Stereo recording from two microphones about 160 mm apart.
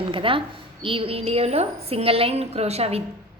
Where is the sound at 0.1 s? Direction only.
35° right (ahead or behind).